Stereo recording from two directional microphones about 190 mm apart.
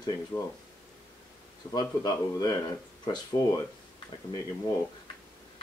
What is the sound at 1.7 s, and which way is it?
Speech, 20° left (ahead or behind).